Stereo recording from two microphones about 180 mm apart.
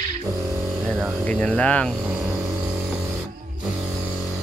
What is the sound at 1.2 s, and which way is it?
Speech, 5° left (ahead or behind).